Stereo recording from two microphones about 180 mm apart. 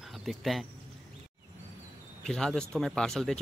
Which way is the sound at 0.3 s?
Centre (ahead or behind).